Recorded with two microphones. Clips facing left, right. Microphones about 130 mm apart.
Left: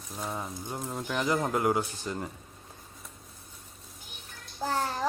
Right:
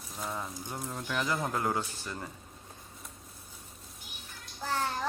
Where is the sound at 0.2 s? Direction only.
25° left (ahead or behind).